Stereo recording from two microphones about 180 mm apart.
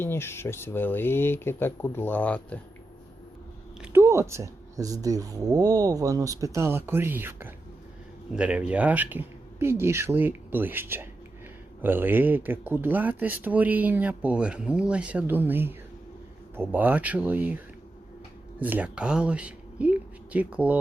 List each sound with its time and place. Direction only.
0.0 s speech: 15° left (ahead or behind)
3.8 s speech: 15° right (ahead or behind)
18.6 s speech: 10° right (ahead or behind)